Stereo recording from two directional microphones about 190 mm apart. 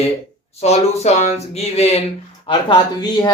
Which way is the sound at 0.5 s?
35° left (ahead or behind).